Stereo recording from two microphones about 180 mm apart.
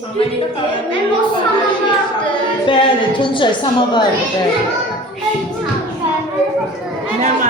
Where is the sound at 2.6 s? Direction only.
30° left (ahead or behind).